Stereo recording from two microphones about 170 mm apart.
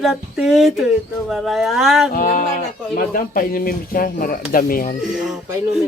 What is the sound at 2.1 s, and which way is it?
Speech, 55° left (ahead or behind).